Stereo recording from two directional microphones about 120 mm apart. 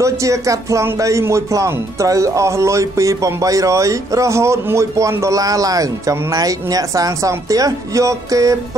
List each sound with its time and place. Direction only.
0.0 s speech: 25° right (ahead or behind)